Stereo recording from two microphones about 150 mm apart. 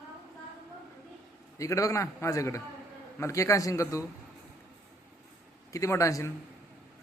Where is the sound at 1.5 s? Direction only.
20° left (ahead or behind).